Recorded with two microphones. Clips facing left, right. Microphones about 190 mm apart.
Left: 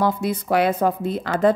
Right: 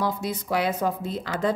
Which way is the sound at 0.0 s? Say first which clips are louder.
Left 6 dB; 60° left (ahead or behind).